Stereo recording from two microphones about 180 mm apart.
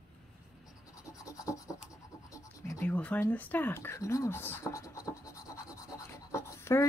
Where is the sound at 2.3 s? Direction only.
15° left (ahead or behind).